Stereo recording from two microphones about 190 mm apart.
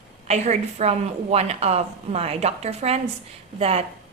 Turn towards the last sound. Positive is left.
turn(degrees=-35)  # may be behind; listen again after turning